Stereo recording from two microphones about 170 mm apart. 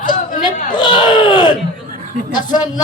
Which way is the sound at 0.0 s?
50° left (ahead or behind).